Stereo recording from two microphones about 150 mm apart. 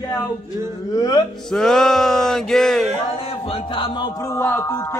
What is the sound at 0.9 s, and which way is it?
Music, 25° left (ahead or behind).